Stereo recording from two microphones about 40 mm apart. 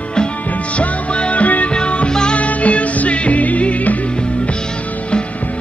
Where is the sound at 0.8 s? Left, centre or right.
Left.